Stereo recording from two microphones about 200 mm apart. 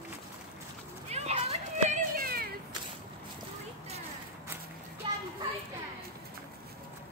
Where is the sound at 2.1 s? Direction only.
50° right (ahead or behind).